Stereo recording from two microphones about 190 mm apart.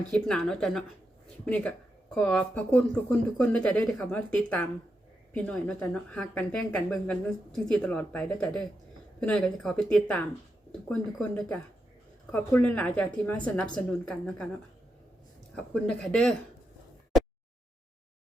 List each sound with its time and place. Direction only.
0.1 s speech: 5° left (ahead or behind)